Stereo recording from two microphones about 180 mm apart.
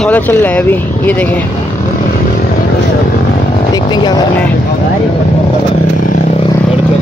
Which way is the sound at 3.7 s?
25° left (ahead or behind).